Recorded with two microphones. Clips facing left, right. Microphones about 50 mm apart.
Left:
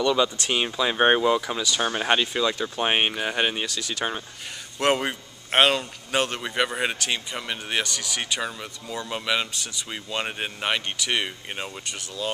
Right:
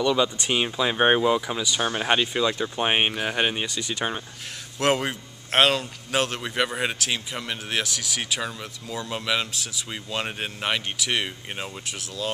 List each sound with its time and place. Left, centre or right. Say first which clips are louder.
0.0 s a man's voice: even; centre
3.6 s speech: right 1 dB; right
4.7 s a man's voice: even; centre